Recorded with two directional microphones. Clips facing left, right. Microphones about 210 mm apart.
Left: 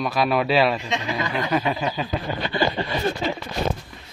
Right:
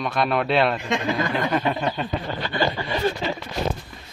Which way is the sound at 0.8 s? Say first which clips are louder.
Right 3 dB; 55° right (ahead or behind).